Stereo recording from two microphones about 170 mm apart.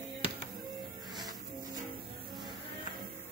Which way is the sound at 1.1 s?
25° right (ahead or behind).